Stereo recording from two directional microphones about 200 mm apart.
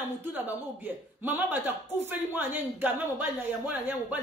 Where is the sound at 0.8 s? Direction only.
10° right (ahead or behind).